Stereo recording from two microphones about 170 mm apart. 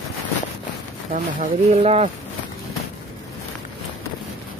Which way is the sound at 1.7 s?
35° right (ahead or behind).